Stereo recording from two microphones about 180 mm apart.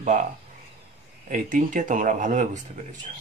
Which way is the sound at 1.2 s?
45° right (ahead or behind).